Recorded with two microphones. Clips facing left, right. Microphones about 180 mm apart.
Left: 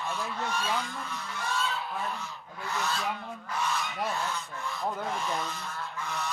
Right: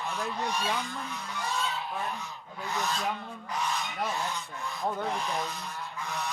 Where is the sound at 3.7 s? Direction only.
15° right (ahead or behind).